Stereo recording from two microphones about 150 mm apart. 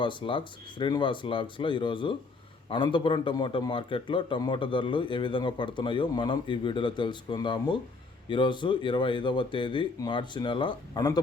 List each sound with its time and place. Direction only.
0.0 s a man's voice: 35° left (ahead or behind)